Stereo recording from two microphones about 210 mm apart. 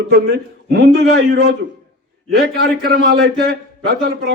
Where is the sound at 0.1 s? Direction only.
45° right (ahead or behind).